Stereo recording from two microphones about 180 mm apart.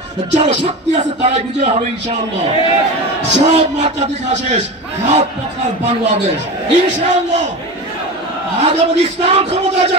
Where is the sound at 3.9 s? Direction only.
40° right (ahead or behind).